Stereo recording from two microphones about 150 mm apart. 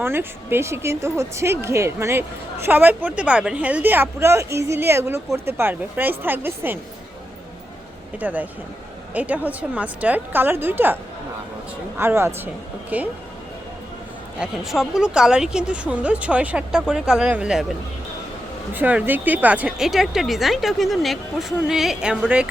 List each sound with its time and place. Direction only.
0.0 s speech: 15° right (ahead or behind)
8.2 s speech: 10° right (ahead or behind)
11.9 s speech: 15° right (ahead or behind)
14.3 s speech: 5° right (ahead or behind)